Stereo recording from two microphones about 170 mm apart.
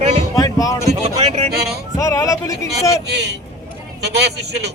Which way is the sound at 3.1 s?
80° right.